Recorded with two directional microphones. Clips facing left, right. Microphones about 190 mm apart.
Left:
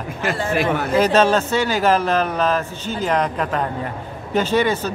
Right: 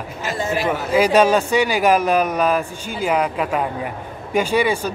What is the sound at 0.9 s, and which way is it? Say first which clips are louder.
Speech: right 2 dB; 10° right (ahead or behind).